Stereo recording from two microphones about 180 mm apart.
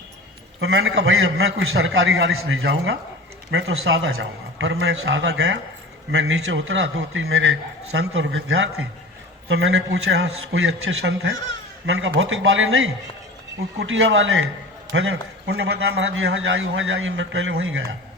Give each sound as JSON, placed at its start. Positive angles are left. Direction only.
{"t": 0.6, "sound": "a man's voice", "side_deg": -90}
{"t": 6.1, "sound": "a man's voice", "side_deg": -90}
{"t": 11.9, "sound": "a man's voice", "side_deg": -90}
{"t": 14.9, "sound": "a man's voice", "side_deg": -70}